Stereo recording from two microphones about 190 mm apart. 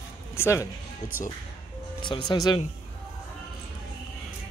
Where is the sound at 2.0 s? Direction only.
25° left (ahead or behind).